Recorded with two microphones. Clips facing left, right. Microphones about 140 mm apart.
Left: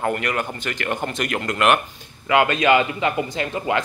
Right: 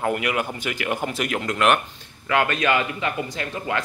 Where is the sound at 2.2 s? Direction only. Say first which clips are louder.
Left 4 dB; 20° left (ahead or behind).